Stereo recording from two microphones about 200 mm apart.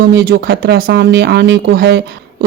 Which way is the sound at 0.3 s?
55° right (ahead or behind).